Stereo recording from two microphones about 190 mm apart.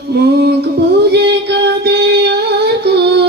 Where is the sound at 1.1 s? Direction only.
60° right (ahead or behind).